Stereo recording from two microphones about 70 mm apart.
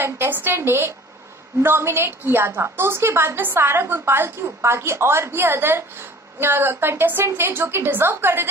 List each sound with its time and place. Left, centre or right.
0.0 s a woman's voice: right